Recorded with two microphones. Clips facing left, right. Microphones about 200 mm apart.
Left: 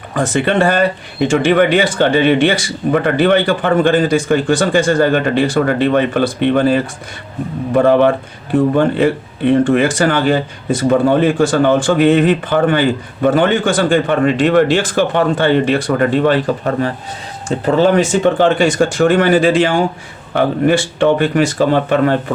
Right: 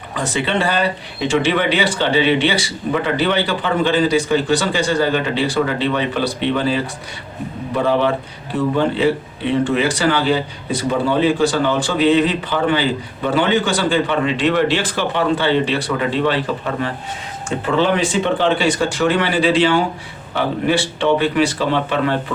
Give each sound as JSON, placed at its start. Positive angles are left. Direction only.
{"t": 0.1, "sound": "speech", "side_deg": 50}